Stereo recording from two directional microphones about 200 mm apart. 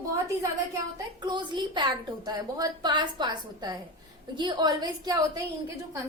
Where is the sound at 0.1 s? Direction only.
15° right (ahead or behind).